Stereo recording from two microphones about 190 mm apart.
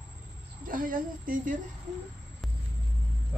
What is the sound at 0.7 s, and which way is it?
Speech, 45° right (ahead or behind).